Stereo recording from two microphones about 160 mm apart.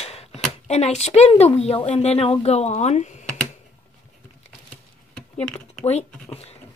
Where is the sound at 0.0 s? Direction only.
40° left (ahead or behind).